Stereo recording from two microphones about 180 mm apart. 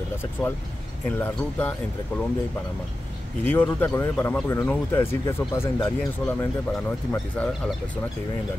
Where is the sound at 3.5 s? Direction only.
10° left (ahead or behind).